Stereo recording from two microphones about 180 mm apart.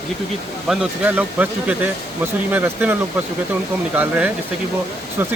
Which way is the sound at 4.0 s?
10° right (ahead or behind).